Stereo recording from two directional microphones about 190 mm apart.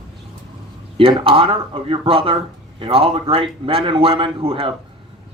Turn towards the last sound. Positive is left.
turn(degrees=-30)  # may be behind; listen again after turning